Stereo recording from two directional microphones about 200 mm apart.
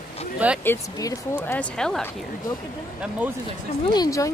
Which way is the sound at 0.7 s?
15° left (ahead or behind).